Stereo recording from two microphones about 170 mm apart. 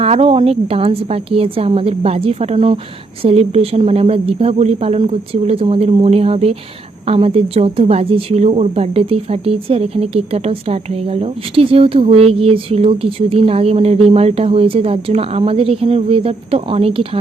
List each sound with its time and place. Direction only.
0.0 s speech: 35° right (ahead or behind)